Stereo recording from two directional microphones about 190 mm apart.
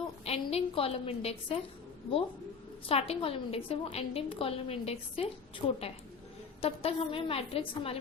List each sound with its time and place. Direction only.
0.3 s a woman's voice: 30° left (ahead or behind)
2.9 s a woman's voice: 30° left (ahead or behind)